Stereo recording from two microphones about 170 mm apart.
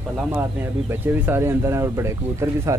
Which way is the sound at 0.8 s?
15° right (ahead or behind).